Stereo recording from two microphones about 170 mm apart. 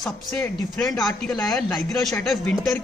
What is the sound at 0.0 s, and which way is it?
Speech, 5° left (ahead or behind).